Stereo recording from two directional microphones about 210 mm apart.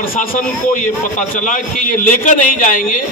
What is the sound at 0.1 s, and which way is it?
A man's voice, 40° left (ahead or behind).